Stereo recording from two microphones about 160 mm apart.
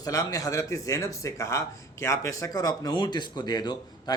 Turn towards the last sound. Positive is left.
turn(degrees=25)  # may be behind; listen again after turning